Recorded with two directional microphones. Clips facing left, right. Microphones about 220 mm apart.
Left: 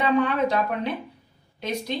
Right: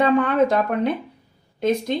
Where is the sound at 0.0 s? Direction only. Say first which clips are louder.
Right 4 dB; 50° right (ahead or behind).